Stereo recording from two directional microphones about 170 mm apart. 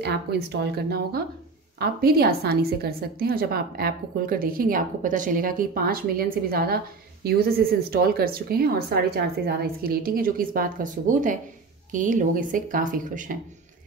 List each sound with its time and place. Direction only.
0.0 s a woman's voice: 75° right (ahead or behind); by 13.4 s 50° right (ahead or behind)